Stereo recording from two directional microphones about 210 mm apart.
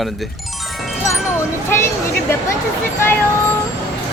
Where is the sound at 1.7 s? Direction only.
10° left (ahead or behind).